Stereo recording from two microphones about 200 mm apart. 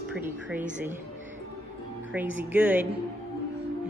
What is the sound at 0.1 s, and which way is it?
Speech, 5° right (ahead or behind).